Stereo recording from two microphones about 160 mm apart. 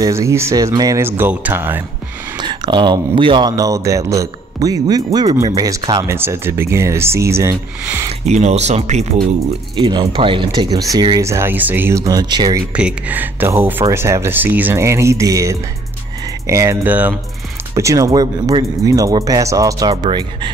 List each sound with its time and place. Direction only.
0.0 s speech: 20° right (ahead or behind)
2.3 s speech: 30° right (ahead or behind)
8.1 s speech: 45° right (ahead or behind)
9.8 s speech: 30° right (ahead or behind)
12.7 s speech: 10° right (ahead or behind); by 20.5 s 30° right (ahead or behind)